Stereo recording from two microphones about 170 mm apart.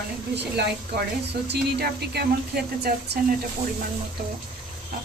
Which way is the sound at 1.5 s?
70° right (ahead or behind).